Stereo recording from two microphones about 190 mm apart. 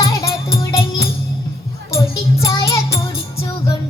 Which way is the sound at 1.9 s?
15° left (ahead or behind).